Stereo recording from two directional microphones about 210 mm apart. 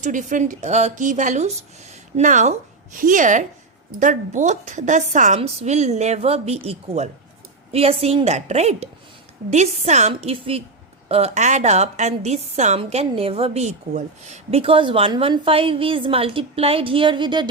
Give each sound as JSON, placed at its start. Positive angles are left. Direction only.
{"t": 0.0, "sound": "a woman's voice", "side_deg": -35}